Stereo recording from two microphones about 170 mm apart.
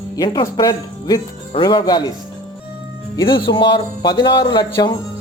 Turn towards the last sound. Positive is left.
turn(degrees=30)  # may be behind; listen again after turning